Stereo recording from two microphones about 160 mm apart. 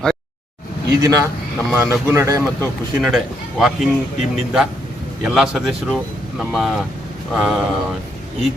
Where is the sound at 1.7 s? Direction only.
15° right (ahead or behind).